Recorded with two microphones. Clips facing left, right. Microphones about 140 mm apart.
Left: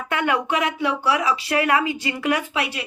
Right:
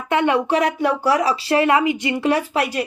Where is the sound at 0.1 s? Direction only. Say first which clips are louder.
Right 5 dB; 25° right (ahead or behind).